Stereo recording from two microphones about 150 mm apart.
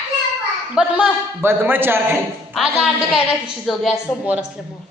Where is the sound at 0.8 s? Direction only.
10° right (ahead or behind).